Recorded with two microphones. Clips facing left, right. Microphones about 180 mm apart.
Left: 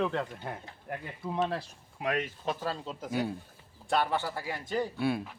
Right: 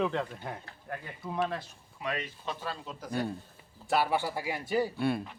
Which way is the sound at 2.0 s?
50° left (ahead or behind).